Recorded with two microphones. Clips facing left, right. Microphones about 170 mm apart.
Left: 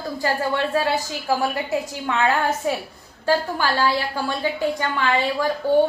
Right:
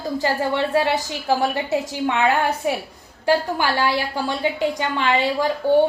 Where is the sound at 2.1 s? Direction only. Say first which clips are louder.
Right 1 dB; 20° right (ahead or behind).